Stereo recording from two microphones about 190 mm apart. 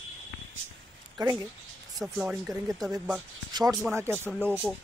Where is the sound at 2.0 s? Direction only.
5° right (ahead or behind).